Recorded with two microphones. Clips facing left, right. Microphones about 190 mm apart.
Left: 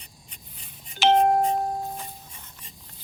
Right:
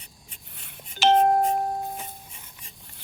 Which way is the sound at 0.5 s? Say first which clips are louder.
Right 2 dB; 70° right (ahead or behind).